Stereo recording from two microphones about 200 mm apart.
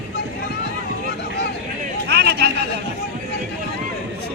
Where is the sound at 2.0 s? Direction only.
55° right (ahead or behind).